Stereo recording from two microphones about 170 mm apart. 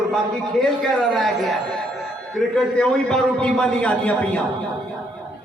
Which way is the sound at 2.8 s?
5° left (ahead or behind).